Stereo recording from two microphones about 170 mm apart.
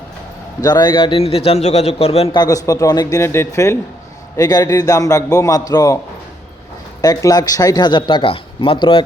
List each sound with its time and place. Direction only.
0.6 s a man's voice: 25° left (ahead or behind)
7.0 s a man's voice: 20° left (ahead or behind)